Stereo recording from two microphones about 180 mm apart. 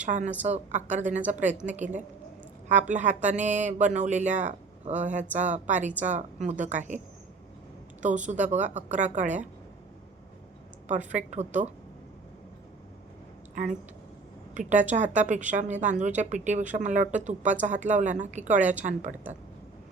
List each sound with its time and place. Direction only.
0.0 s a woman's voice: 45° right (ahead or behind)
8.0 s a woman's voice: 45° right (ahead or behind)
10.8 s speech: 40° right (ahead or behind)
14.5 s a woman's voice: 45° right (ahead or behind)
18.6 s a woman's voice: 10° right (ahead or behind)